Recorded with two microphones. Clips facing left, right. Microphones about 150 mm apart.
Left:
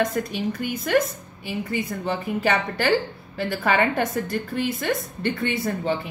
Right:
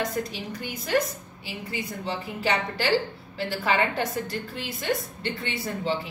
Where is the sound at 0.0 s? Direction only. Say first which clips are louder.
Left 6 dB; 50° left (ahead or behind).